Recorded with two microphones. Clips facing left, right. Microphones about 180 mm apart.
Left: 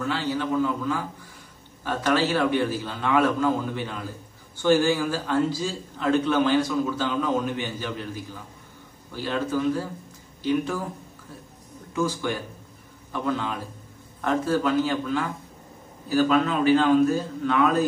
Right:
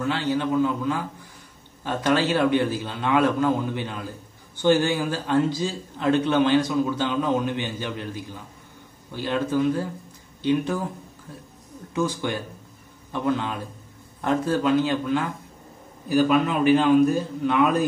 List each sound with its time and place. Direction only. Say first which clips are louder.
0.0 s a man's voice: right 2 dB; 20° right (ahead or behind)
11.9 s a man's voice: right 1 dB; 20° right (ahead or behind)